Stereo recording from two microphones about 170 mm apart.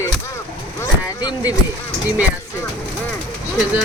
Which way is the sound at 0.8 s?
20° left (ahead or behind).